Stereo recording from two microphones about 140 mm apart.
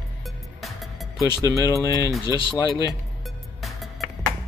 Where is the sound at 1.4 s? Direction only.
20° right (ahead or behind).